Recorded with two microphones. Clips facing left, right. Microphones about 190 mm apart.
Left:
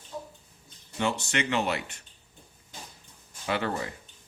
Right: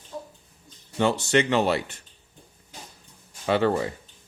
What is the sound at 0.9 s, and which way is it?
Speech, 30° right (ahead or behind).